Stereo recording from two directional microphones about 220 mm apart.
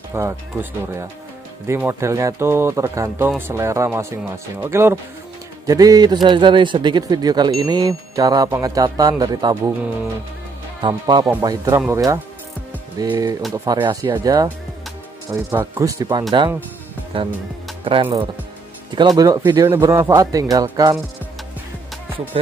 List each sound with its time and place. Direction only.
0.1 s speech: 10° right (ahead or behind)
10.8 s speech: 20° right (ahead or behind)
15.5 s speech: 15° right (ahead or behind)
18.9 s speech: 20° right (ahead or behind)